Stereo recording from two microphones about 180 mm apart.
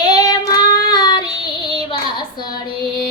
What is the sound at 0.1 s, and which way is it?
Child singing, 20° left (ahead or behind).